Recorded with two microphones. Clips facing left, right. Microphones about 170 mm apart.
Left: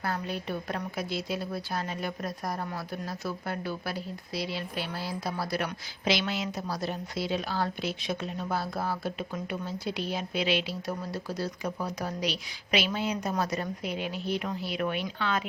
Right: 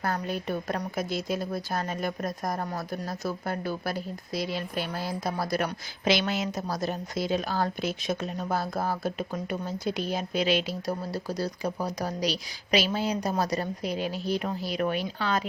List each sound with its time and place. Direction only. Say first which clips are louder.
0.0 s a woman's voice: right 3 dB; 45° right (ahead or behind)